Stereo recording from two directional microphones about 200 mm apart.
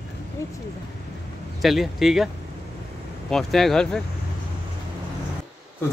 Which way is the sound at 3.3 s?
Centre (ahead or behind).